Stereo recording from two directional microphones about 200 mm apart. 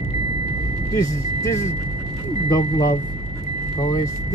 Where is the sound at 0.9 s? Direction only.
15° left (ahead or behind).